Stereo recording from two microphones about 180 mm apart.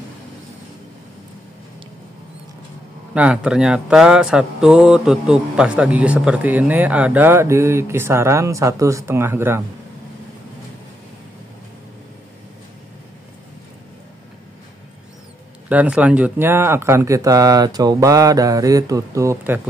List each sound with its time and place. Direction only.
3.2 s speech: 5° right (ahead or behind)
15.7 s speech: 10° right (ahead or behind)